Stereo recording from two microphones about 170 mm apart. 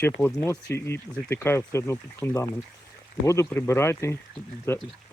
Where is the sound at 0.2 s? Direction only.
15° left (ahead or behind).